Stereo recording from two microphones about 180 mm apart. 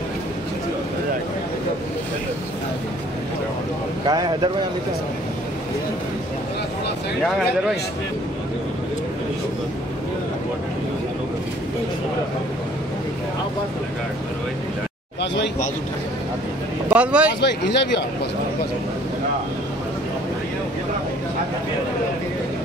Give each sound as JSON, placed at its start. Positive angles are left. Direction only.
{"t": 4.1, "sound": "speech", "side_deg": -20}
{"t": 7.2, "sound": "speech", "side_deg": 0}
{"t": 16.9, "sound": "speech", "side_deg": -5}
{"t": 17.3, "sound": "speech", "side_deg": 70}